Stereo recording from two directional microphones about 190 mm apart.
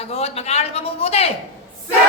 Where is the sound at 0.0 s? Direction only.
35° left (ahead or behind).